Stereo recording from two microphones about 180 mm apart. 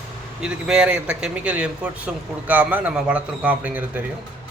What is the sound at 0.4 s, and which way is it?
A man's voice, 5° right (ahead or behind).